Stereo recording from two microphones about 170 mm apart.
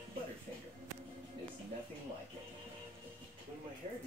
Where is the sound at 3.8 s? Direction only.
45° right (ahead or behind).